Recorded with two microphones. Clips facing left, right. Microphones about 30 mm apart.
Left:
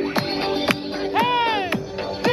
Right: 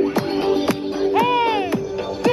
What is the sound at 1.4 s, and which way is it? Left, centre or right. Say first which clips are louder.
Music: right 2 dB; centre.